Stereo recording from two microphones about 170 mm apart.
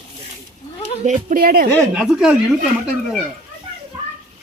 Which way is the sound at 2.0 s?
5° right (ahead or behind).